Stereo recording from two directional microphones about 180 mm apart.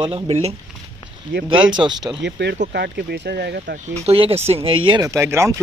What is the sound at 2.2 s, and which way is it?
Speech, 70° right (ahead or behind).